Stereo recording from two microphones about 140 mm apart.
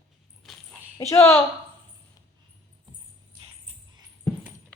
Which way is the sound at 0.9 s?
20° left (ahead or behind).